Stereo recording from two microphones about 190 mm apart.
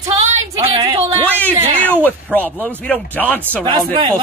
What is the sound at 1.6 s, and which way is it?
Speech, 30° right (ahead or behind).